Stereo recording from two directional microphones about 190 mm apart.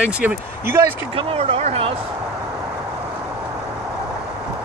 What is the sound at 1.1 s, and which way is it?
Speech, 30° right (ahead or behind).